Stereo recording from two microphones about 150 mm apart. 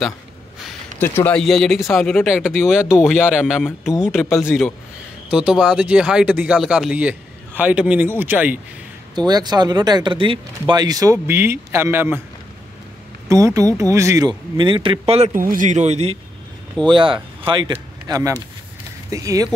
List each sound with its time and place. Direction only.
0.7 s a sound: 10° left (ahead or behind)
1.4 s speech: centre (ahead or behind)
9.1 s speech: 30° right (ahead or behind)
13.3 s speech: 20° right (ahead or behind); by 15.3 s 45° right (ahead or behind)
15.3 s speech: 65° right (ahead or behind); by 16.2 s 45° right (ahead or behind)
16.9 s speech: 35° right (ahead or behind)